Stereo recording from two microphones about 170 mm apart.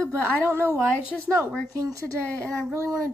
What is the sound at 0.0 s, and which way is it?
A woman's voice, 15° right (ahead or behind).